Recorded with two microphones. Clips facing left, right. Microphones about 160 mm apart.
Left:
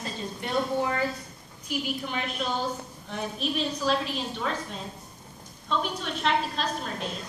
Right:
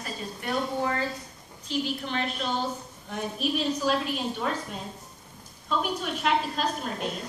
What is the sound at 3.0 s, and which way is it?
A woman's voice, 5° right (ahead or behind).